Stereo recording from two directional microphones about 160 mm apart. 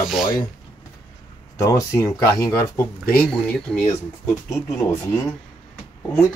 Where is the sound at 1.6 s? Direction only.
20° left (ahead or behind).